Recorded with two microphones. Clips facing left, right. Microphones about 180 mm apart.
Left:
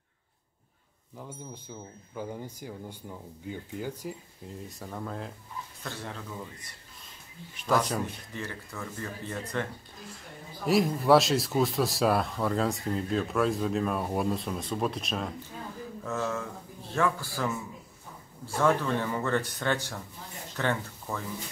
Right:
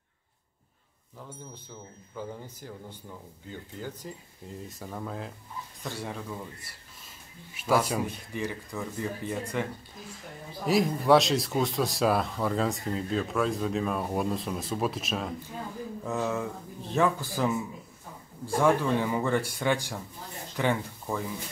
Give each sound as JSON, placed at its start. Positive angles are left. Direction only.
{"t": 1.1, "sound": "speech", "side_deg": 10}
{"t": 4.5, "sound": "speech", "side_deg": 0}
{"t": 5.9, "sound": "speech", "side_deg": -15}
{"t": 10.6, "sound": "speech", "side_deg": 0}
{"t": 16.0, "sound": "speech", "side_deg": -15}